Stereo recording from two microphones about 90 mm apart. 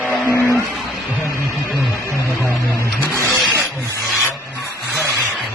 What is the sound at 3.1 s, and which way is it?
Wild animals, 35° left (ahead or behind).